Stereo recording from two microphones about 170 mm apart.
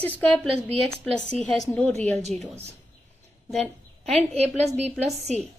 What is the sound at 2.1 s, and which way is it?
Speech, 40° right (ahead or behind).